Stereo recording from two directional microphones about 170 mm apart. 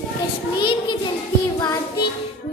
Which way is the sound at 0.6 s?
30° left (ahead or behind).